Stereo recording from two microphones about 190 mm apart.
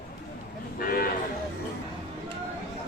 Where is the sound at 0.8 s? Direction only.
50° left (ahead or behind).